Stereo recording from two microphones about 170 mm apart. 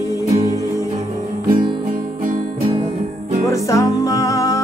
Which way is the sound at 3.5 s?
20° left (ahead or behind).